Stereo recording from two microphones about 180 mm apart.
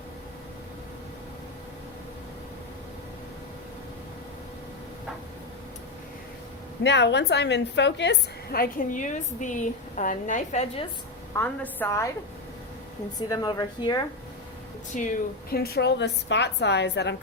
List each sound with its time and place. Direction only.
6.8 s a woman's voice: 75° left (ahead or behind); by 10.8 s 40° left (ahead or behind)
11.3 s a woman's voice: 10° left (ahead or behind)
13.1 s a woman's voice: 20° left (ahead or behind)
14.9 s a woman's voice: 50° left (ahead or behind); by 17.2 s 70° left (ahead or behind)